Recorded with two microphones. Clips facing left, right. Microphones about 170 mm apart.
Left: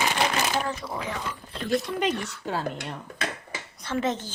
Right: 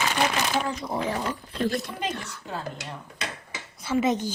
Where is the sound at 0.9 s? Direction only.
35° right (ahead or behind).